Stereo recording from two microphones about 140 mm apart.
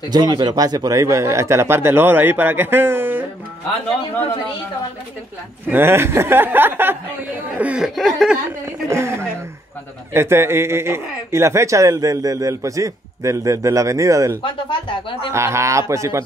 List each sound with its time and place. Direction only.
0.1 s speech: 30° right (ahead or behind); by 3.3 s 15° right (ahead or behind)
5.7 s speech: 15° right (ahead or behind); by 8.4 s centre (ahead or behind)
8.8 s a man's voice: 20° right (ahead or behind)
14.4 s speech: 35° left (ahead or behind)
15.3 s a man's voice: 20° right (ahead or behind)